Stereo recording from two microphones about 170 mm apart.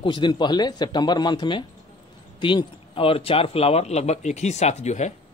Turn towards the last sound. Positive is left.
turn(degrees=45)  # may be behind; listen again after turning